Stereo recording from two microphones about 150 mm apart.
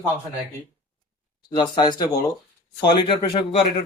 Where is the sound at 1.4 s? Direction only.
30° left (ahead or behind).